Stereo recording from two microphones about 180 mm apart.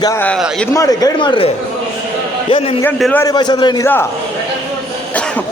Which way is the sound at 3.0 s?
10° left (ahead or behind).